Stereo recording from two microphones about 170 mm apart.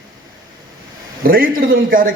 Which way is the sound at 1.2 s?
60° right (ahead or behind).